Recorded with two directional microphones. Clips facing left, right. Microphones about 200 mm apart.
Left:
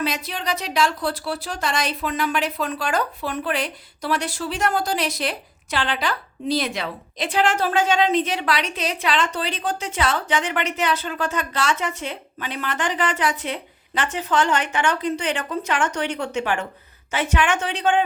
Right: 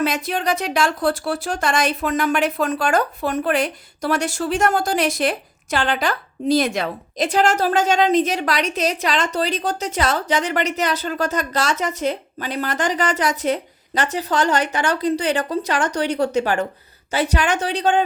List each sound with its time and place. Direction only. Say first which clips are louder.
0.0 s speech: right 5 dB; 50° right (ahead or behind)